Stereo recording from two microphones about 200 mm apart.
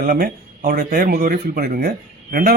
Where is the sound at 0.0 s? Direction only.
45° right (ahead or behind).